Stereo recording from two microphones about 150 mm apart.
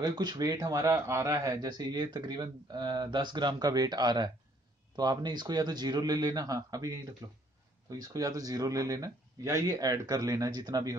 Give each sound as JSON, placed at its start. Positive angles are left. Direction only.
{"t": 0.0, "sound": "a man's voice", "side_deg": -25}